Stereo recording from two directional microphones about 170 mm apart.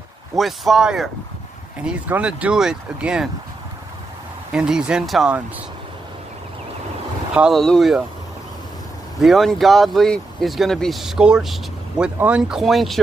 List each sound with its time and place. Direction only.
0.4 s speech: centre (ahead or behind)
4.5 s speech: 5° right (ahead or behind)
7.3 s speech: centre (ahead or behind)
9.2 s speech: centre (ahead or behind)